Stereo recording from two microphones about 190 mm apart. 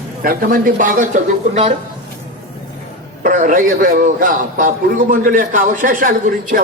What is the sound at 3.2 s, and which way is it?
A man's voice, 45° right (ahead or behind).